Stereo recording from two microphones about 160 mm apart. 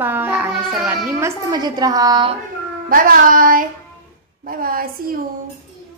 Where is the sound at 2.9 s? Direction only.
60° right (ahead or behind).